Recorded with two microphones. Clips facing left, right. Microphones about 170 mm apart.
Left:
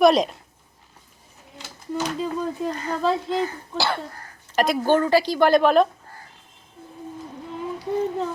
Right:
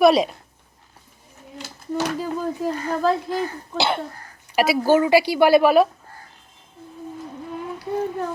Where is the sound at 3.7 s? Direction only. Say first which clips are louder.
Right 3 dB; 20° right (ahead or behind).